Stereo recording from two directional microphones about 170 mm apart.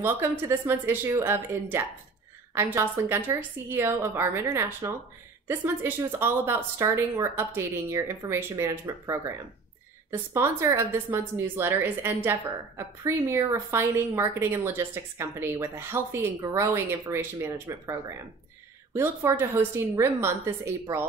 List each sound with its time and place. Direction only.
0.0 s a woman's voice: 15° right (ahead or behind)
10.3 s a woman's voice: 15° right (ahead or behind)
18.9 s a woman's voice: 15° right (ahead or behind)